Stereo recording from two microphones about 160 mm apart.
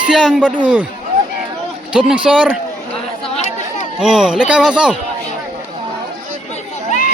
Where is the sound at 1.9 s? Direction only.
5° right (ahead or behind).